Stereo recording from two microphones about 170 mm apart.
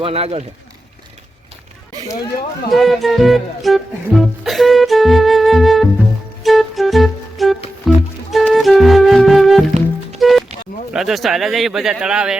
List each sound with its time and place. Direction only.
0.0 s speech: 35° right (ahead or behind)
2.6 s speech: centre (ahead or behind)
6.4 s music: centre (ahead or behind)
10.9 s speech: centre (ahead or behind)